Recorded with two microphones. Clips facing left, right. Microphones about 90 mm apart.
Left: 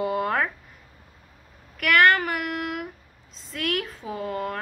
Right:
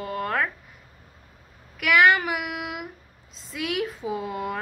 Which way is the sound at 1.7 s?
5° right (ahead or behind).